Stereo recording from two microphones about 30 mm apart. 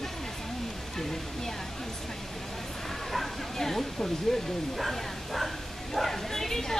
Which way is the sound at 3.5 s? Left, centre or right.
Centre.